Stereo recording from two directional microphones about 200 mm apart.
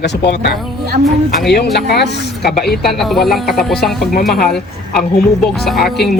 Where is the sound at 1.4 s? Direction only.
55° left (ahead or behind).